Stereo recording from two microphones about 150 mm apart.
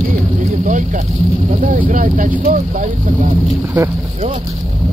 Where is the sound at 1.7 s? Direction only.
65° right (ahead or behind).